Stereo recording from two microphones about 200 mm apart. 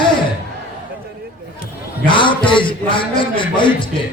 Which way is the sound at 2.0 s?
25° left (ahead or behind).